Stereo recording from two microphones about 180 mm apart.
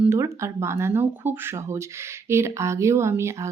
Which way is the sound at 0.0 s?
15° right (ahead or behind).